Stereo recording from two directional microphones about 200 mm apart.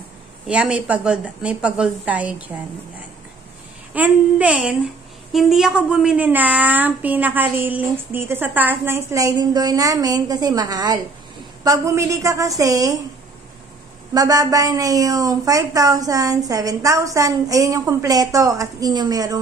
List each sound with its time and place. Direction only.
0.5 s a woman's voice: 5° right (ahead or behind)
3.9 s a woman's voice: 5° right (ahead or behind)
14.1 s a woman's voice: 15° right (ahead or behind)